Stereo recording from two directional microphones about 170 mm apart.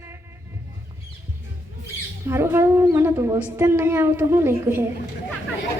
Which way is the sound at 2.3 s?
15° right (ahead or behind).